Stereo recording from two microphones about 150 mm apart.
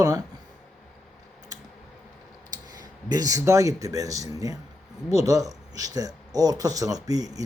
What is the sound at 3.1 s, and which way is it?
Speech, 25° right (ahead or behind).